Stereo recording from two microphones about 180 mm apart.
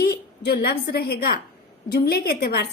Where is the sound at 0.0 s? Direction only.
60° left (ahead or behind).